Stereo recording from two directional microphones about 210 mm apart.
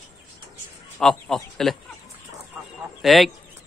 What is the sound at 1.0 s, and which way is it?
Speech, centre (ahead or behind).